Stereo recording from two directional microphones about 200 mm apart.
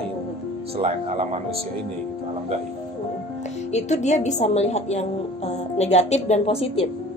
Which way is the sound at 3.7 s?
35° left (ahead or behind).